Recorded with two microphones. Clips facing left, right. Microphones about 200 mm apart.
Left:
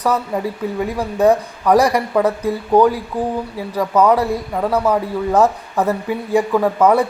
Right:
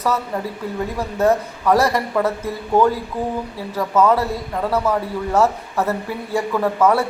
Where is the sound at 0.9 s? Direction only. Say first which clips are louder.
Left 3 dB; 15° left (ahead or behind).